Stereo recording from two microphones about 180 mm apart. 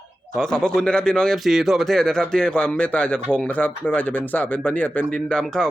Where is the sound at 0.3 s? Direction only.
5° left (ahead or behind).